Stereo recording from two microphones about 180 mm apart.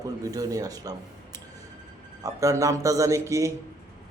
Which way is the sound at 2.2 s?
20° right (ahead or behind).